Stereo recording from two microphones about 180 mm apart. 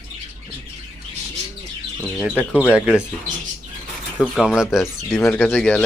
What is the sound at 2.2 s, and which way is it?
Speech, 10° right (ahead or behind).